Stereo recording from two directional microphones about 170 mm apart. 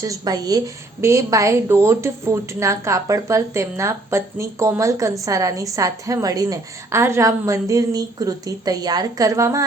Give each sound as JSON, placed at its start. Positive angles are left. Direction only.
{"t": 0.0, "sound": "a woman's voice", "side_deg": -20}